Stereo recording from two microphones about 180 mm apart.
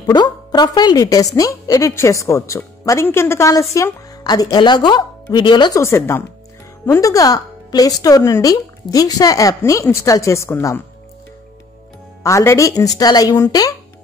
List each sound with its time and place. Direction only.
0.0 s a woman's voice: 25° left (ahead or behind)
12.2 s a woman's voice: 15° left (ahead or behind)